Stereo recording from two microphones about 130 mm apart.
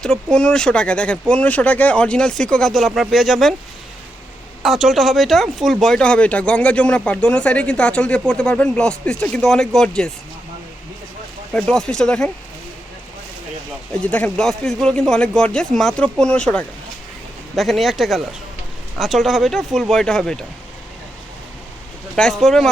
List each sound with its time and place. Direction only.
0.0 s speech: 5° left (ahead or behind)
4.6 s speech: centre (ahead or behind)
11.5 s speech: 5° left (ahead or behind)
14.0 s speech: 10° left (ahead or behind)
22.1 s speech: 5° left (ahead or behind)